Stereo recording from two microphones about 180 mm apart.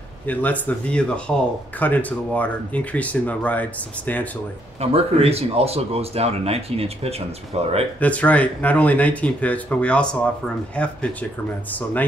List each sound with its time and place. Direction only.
0.3 s speech: 10° left (ahead or behind)
4.7 s speech: 35° right (ahead or behind)
8.0 s speech: 10° left (ahead or behind)